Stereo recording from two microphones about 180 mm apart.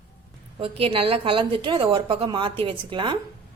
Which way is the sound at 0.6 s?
30° right (ahead or behind).